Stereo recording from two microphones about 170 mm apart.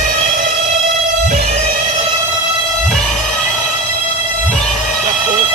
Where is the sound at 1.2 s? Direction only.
45° right (ahead or behind).